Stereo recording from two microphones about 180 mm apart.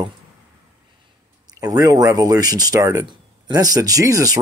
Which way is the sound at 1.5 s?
20° right (ahead or behind).